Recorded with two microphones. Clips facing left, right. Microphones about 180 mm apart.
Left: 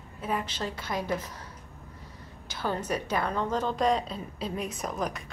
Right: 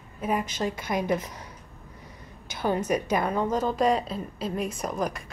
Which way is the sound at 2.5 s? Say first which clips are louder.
Right 5 dB; 15° right (ahead or behind).